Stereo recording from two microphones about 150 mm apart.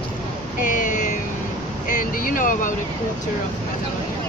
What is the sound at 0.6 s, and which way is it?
Speech, 60° left (ahead or behind).